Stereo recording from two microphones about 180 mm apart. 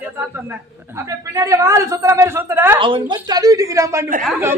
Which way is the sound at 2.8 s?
30° right (ahead or behind).